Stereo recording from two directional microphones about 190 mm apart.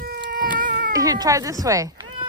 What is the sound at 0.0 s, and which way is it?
Cat, 50° right (ahead or behind).